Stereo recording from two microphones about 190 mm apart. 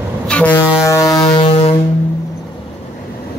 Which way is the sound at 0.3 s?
5° left (ahead or behind).